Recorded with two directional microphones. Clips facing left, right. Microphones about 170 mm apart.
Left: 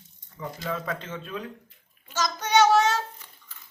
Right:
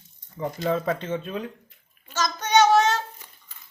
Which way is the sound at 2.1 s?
10° left (ahead or behind).